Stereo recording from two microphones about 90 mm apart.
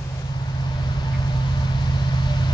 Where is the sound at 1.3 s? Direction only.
55° left (ahead or behind).